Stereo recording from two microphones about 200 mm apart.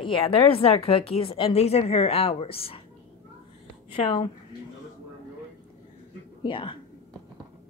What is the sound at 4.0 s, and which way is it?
Speech, 30° left (ahead or behind).